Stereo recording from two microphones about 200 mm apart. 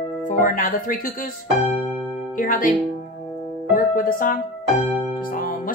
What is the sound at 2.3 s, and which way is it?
Speech, 40° left (ahead or behind).